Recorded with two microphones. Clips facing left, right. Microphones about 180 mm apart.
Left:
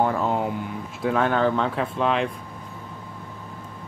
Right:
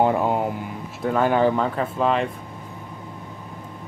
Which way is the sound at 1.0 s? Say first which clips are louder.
Right 2 dB; 5° right (ahead or behind).